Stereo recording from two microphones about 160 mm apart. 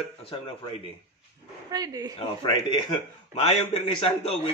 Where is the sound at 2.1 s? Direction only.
30° left (ahead or behind).